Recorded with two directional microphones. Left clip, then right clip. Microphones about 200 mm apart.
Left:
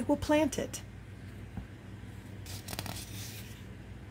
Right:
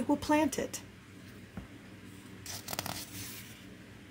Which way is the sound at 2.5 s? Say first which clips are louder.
Right 3 dB; centre (ahead or behind).